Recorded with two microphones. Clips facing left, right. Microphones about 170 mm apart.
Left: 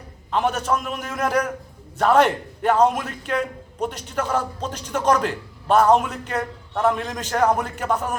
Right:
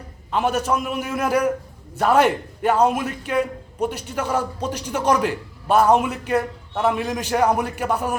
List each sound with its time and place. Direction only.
0.3 s a man's voice: 5° right (ahead or behind)